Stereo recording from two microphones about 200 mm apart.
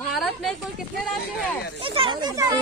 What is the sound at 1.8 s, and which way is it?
Speech, 25° right (ahead or behind).